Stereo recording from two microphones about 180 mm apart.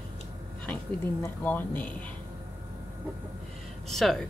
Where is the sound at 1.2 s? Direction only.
10° left (ahead or behind).